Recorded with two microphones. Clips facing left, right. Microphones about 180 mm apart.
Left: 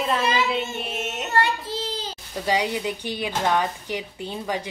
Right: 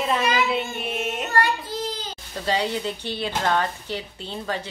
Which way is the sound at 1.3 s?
25° left (ahead or behind).